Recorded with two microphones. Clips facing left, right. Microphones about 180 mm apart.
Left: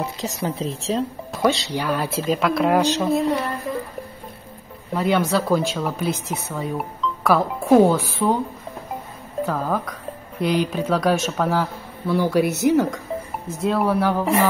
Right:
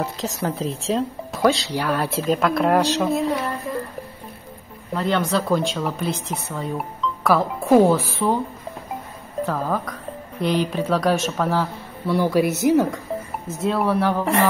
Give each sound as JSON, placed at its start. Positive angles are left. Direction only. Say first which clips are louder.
{"t": 0.0, "sound": "speech", "louder": "right 1 dB", "side_deg": 0}
{"t": 4.9, "sound": "speech", "louder": "left 2 dB", "side_deg": 10}
{"t": 9.5, "sound": "speech", "louder": "even", "side_deg": 0}